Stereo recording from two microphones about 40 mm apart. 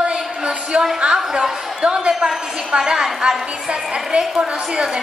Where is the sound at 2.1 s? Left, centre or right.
Centre.